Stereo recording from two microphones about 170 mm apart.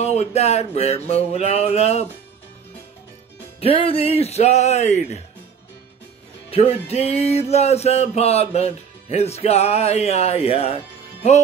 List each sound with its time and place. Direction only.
0.0 s music: 40° left (ahead or behind)
3.6 s music: 35° left (ahead or behind)
6.5 s music: 35° left (ahead or behind)